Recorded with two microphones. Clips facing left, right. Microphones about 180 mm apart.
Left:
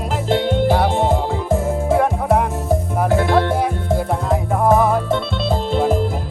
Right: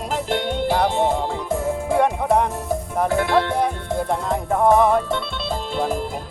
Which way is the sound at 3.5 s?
5° left (ahead or behind).